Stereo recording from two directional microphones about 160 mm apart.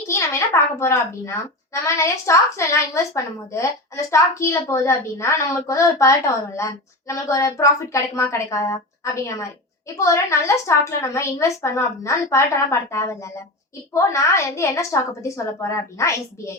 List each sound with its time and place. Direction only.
0.1 s a child's voice: 15° left (ahead or behind)